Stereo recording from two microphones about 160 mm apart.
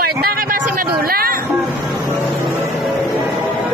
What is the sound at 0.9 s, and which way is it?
Speech, 70° right (ahead or behind).